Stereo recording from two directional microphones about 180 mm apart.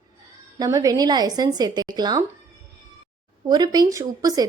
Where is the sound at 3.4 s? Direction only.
20° right (ahead or behind).